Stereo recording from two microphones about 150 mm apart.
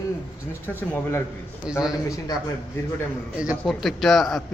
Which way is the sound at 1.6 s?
5° right (ahead or behind).